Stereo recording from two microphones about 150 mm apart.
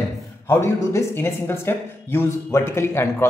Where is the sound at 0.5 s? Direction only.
15° left (ahead or behind).